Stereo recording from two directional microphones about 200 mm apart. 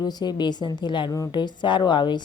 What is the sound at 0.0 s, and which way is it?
A woman's voice, 20° left (ahead or behind).